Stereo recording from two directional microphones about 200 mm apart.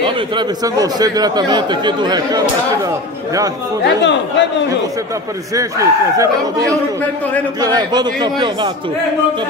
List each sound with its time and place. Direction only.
0.7 s speech: 20° right (ahead or behind)
3.8 s speech: 60° left (ahead or behind)
5.6 s speech: 15° right (ahead or behind)